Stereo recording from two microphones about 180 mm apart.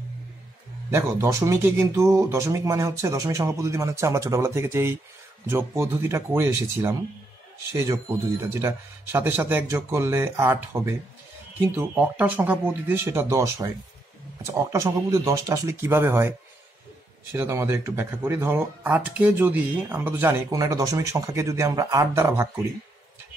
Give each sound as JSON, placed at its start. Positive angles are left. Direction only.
{"t": 0.8, "sound": "speech", "side_deg": -15}
{"t": 8.5, "sound": "speech", "side_deg": -15}